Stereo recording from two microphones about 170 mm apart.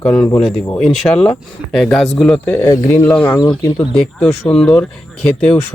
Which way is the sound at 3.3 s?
25° left (ahead or behind).